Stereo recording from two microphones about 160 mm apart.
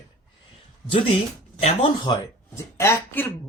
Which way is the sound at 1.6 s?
40° left (ahead or behind).